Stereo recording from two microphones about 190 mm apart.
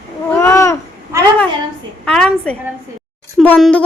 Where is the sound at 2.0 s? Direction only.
5° left (ahead or behind).